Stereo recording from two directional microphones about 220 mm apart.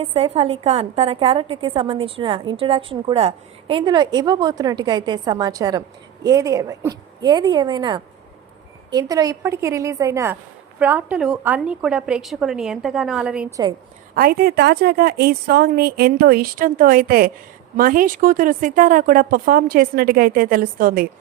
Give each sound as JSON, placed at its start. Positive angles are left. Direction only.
{"t": 0.0, "sound": "a woman's voice", "side_deg": -25}
{"t": 14.2, "sound": "a woman's voice", "side_deg": -45}